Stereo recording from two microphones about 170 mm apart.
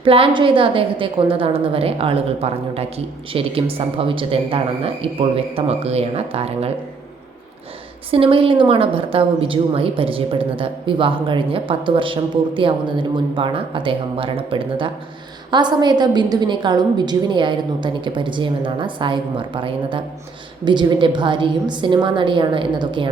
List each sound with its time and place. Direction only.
0.0 s a woman's voice: 30° right (ahead or behind)
8.1 s a woman's voice: 30° right (ahead or behind)